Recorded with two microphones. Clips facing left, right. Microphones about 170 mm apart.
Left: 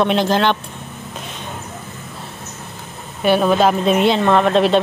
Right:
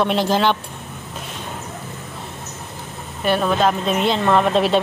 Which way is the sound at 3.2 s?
5° left (ahead or behind).